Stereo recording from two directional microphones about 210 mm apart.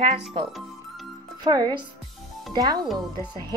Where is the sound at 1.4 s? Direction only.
20° right (ahead or behind).